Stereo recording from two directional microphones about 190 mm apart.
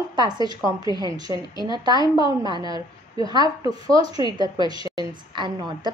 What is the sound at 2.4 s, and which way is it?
A woman's voice, 20° right (ahead or behind).